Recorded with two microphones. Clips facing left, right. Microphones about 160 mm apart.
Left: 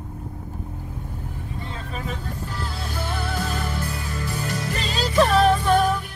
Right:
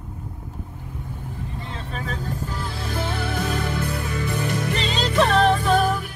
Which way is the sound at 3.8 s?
55° right (ahead or behind).